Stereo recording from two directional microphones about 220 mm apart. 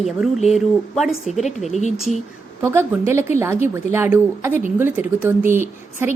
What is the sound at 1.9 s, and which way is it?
A woman's voice, centre (ahead or behind).